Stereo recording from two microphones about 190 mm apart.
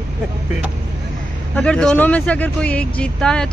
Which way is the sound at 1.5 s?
5° left (ahead or behind).